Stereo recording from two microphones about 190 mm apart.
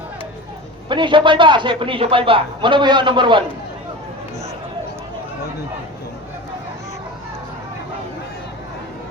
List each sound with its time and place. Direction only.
0.9 s a man's voice: 25° right (ahead or behind)